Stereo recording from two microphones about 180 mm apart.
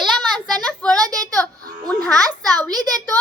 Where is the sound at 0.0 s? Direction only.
5° left (ahead or behind).